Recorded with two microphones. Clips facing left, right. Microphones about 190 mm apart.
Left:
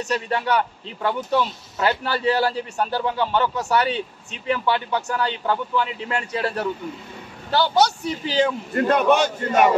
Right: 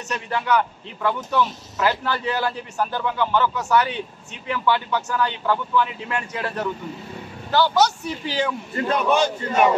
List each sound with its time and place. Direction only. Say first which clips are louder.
0.1 s a man's voice: right 1 dB; 30° left (ahead or behind)
8.7 s a man's voice: left 3 dB; 55° left (ahead or behind)